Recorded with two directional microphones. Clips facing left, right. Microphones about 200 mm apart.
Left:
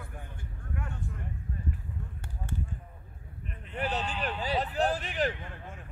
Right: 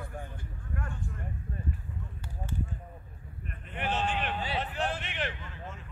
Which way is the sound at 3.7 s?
40° left (ahead or behind).